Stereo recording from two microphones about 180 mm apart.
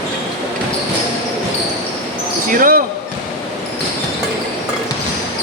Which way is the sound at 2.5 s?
50° right (ahead or behind).